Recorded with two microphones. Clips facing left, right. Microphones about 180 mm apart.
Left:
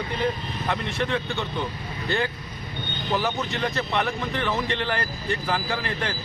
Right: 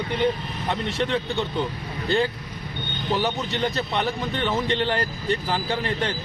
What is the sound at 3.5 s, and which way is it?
Speech, 35° right (ahead or behind).